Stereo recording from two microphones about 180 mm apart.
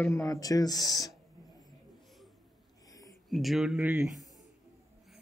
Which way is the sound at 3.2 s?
Centre (ahead or behind).